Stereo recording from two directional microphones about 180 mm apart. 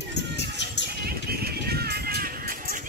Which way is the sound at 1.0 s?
60° right (ahead or behind).